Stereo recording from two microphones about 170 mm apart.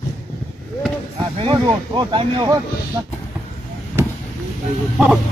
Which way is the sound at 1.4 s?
30° right (ahead or behind).